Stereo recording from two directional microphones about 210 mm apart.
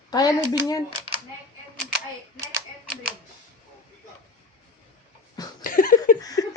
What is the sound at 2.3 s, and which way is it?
Typewriter, 15° right (ahead or behind).